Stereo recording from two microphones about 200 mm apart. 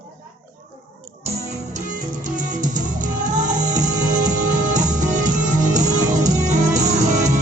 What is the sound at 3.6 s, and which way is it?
Music, 35° right (ahead or behind).